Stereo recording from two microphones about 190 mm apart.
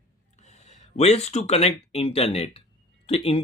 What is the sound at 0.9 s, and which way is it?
Speech, 35° left (ahead or behind).